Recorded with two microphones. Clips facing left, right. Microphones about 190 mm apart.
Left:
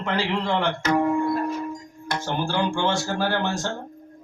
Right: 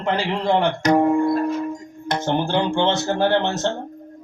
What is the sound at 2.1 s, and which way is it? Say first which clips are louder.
Speech: right 5 dB; 20° right (ahead or behind).